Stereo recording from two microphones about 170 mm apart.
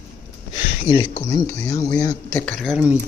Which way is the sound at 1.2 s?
20° left (ahead or behind).